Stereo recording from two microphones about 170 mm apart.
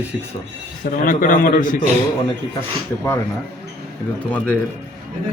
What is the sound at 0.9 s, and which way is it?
Speech, 55° left (ahead or behind).